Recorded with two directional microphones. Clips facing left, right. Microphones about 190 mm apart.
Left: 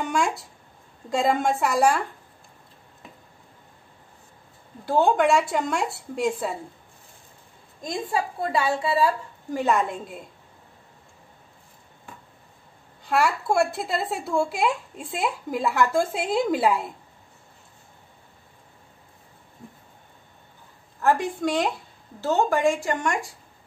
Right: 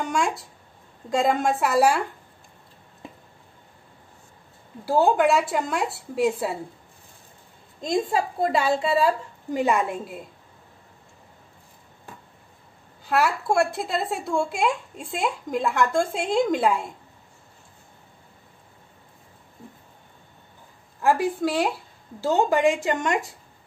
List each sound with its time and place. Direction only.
0.0 s speech: centre (ahead or behind)
4.8 s speech: 5° right (ahead or behind)
7.8 s a woman's voice: 25° right (ahead or behind)
9.6 s speech: 10° right (ahead or behind)
13.0 s speech: centre (ahead or behind)
21.0 s speech: 5° right (ahead or behind)
22.2 s speech: 15° right (ahead or behind)